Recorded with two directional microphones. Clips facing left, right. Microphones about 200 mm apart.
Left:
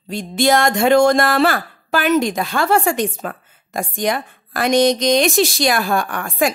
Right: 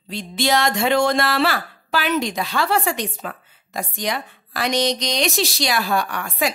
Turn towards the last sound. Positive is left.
turn(degrees=50)  # may be behind; listen again after turning